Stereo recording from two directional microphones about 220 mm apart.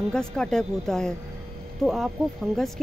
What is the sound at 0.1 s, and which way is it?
Speech, 5° left (ahead or behind).